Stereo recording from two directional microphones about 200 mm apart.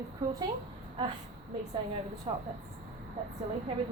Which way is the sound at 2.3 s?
30° right (ahead or behind).